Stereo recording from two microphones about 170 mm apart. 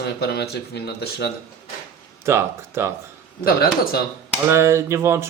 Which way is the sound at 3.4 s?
60° left (ahead or behind).